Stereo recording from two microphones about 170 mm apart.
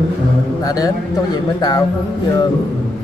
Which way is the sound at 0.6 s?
20° left (ahead or behind).